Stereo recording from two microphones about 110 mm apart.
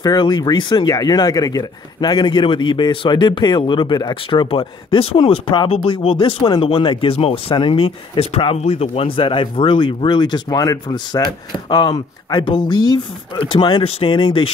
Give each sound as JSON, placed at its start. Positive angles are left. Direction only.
{"t": 0.0, "sound": "speech", "side_deg": 40}
{"t": 7.5, "sound": "speech", "side_deg": 50}
{"t": 13.8, "sound": "speech", "side_deg": 55}